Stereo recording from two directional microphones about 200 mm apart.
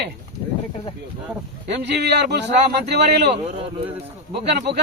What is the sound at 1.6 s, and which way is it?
Speech, 60° right (ahead or behind).